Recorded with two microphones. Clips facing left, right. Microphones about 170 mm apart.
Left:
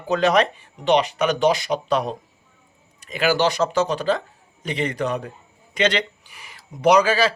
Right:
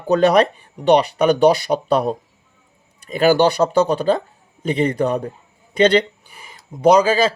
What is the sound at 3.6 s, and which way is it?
Speech, 40° right (ahead or behind).